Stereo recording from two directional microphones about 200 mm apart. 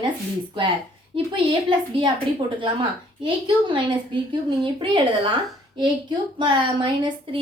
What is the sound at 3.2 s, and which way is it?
A woman's voice, 25° right (ahead or behind).